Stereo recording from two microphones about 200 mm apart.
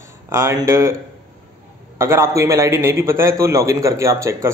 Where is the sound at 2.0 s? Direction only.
15° right (ahead or behind).